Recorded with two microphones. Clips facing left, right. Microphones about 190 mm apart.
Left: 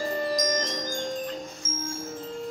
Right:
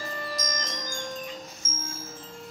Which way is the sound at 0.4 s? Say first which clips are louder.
Left 7 dB; 35° left (ahead or behind).